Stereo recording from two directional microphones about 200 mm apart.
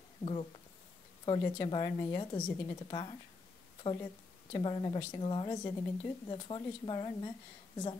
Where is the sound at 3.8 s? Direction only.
25° left (ahead or behind).